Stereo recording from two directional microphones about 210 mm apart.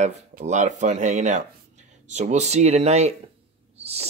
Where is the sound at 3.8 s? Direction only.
30° right (ahead or behind).